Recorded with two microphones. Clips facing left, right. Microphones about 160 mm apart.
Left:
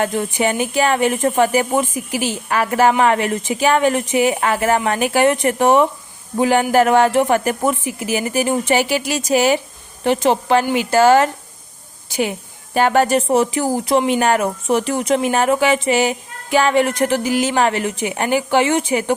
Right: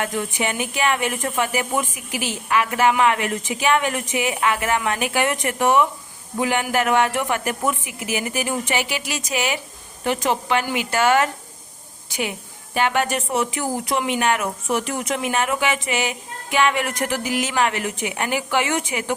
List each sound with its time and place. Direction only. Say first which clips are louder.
0.0 s a woman's voice: left 6 dB; 35° left (ahead or behind)